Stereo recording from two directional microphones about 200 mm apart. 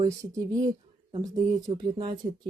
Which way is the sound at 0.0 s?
15° right (ahead or behind).